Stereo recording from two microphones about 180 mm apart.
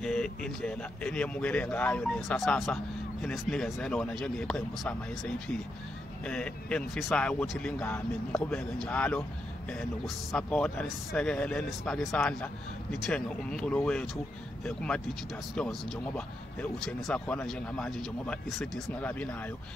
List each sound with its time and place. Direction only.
0.0 s a man's voice: 5° left (ahead or behind)
16.8 s a man's voice: 5° left (ahead or behind)